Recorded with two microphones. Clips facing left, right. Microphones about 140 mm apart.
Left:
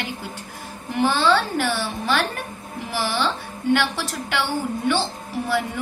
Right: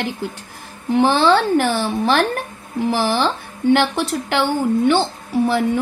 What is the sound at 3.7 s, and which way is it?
Speech, 50° right (ahead or behind).